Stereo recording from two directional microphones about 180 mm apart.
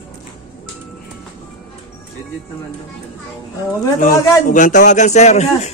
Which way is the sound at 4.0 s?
45° left (ahead or behind).